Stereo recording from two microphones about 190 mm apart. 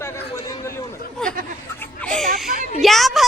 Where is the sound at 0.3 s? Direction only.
15° left (ahead or behind).